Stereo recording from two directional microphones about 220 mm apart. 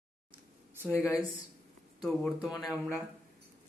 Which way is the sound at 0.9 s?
5° left (ahead or behind).